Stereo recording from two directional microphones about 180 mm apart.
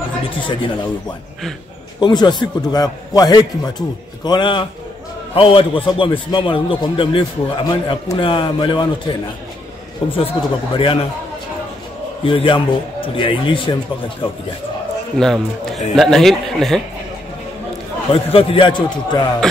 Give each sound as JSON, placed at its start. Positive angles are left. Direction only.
{"t": 0.3, "sound": "a man's voice", "side_deg": 30}
{"t": 2.0, "sound": "a man's voice", "side_deg": 25}
{"t": 10.1, "sound": "a man's voice", "side_deg": 30}
{"t": 12.3, "sound": "a man's voice", "side_deg": 30}
{"t": 15.1, "sound": "speech", "side_deg": 0}
{"t": 18.1, "sound": "a man's voice", "side_deg": 30}
{"t": 19.4, "sound": "music", "side_deg": 5}